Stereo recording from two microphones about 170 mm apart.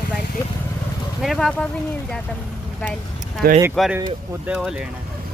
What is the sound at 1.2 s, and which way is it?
Speech, centre (ahead or behind).